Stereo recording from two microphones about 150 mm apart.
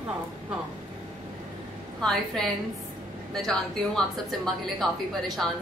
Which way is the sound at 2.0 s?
5° left (ahead or behind).